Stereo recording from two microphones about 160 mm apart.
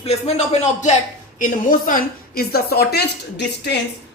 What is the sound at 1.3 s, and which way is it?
A woman's voice, 55° left (ahead or behind).